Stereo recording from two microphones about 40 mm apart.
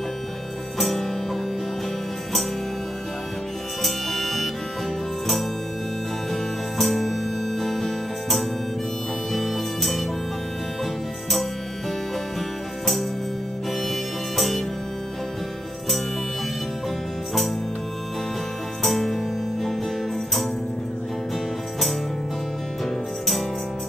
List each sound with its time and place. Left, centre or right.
0.7 s music: centre
3.8 s music: centre
6.3 s music: centre
13.8 s music: centre
18.8 s music: centre